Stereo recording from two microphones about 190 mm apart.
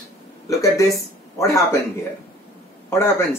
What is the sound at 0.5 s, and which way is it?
Speech, 15° left (ahead or behind).